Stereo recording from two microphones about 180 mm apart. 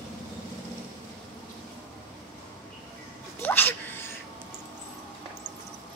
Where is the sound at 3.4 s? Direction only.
10° left (ahead or behind).